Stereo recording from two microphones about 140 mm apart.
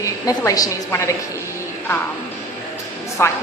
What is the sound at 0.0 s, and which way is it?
A woman's voice, 25° left (ahead or behind).